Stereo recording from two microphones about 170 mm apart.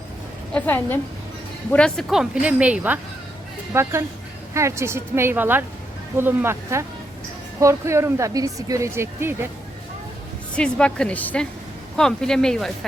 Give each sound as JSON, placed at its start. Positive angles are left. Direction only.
{"t": 0.5, "sound": "a woman's voice", "side_deg": 10}
{"t": 10.5, "sound": "a woman's voice", "side_deg": 5}